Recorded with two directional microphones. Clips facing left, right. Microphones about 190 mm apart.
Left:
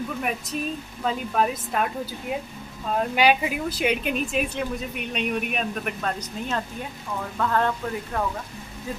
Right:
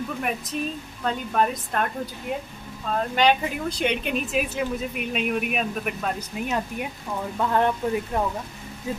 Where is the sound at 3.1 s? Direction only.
10° left (ahead or behind).